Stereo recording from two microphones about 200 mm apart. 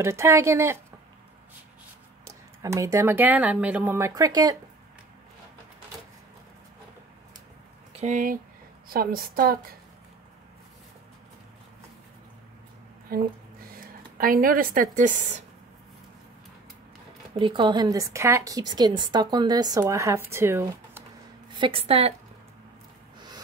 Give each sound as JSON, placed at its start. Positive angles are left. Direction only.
{"t": 0.0, "sound": "a woman's voice", "side_deg": -15}
{"t": 2.2, "sound": "a woman's voice", "side_deg": -15}
{"t": 7.9, "sound": "a woman's voice", "side_deg": -35}
{"t": 13.1, "sound": "speech", "side_deg": -50}
{"t": 17.4, "sound": "a woman's voice", "side_deg": -25}
{"t": 21.5, "sound": "a woman's voice", "side_deg": -25}